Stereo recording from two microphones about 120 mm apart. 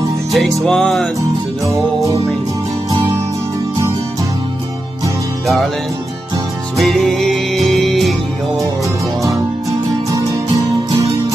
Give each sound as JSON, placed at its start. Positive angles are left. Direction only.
{"t": 0.6, "sound": "music", "side_deg": 5}
{"t": 6.8, "sound": "music", "side_deg": 0}
{"t": 10.9, "sound": "music", "side_deg": -25}